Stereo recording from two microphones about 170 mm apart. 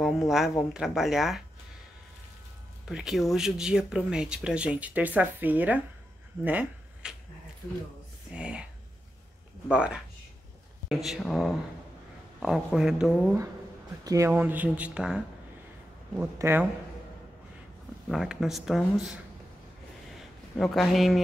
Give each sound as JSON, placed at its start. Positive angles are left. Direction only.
{"t": 0.0, "sound": "speech", "side_deg": 0}
{"t": 2.8, "sound": "speech", "side_deg": -5}
{"t": 6.4, "sound": "a sound", "side_deg": -10}
{"t": 8.3, "sound": "speech", "side_deg": -5}
{"t": 9.7, "sound": "speech", "side_deg": -5}
{"t": 14.0, "sound": "speech", "side_deg": -20}
{"t": 14.3, "sound": "speech", "side_deg": -10}
{"t": 18.0, "sound": "speech", "side_deg": 0}
{"t": 20.2, "sound": "a man's voice", "side_deg": 0}